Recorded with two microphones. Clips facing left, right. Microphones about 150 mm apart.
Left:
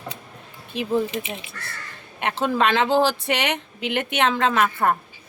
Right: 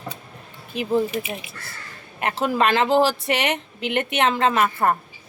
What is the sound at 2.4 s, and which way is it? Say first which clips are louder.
Speech: right 1 dB; centre (ahead or behind).